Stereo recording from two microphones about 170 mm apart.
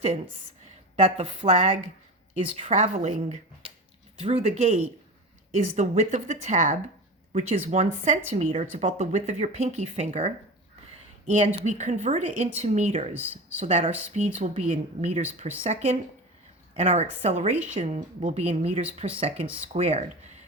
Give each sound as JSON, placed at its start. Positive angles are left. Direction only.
{"t": 1.0, "sound": "speech", "side_deg": -40}